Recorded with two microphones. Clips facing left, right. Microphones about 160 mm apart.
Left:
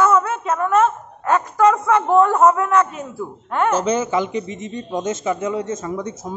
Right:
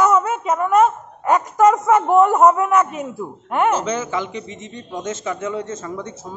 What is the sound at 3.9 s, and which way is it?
Speech, 30° left (ahead or behind).